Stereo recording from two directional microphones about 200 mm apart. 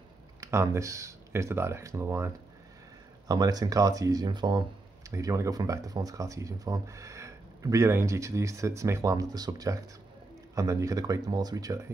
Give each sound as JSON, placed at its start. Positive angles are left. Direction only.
{"t": 0.4, "sound": "speech", "side_deg": -15}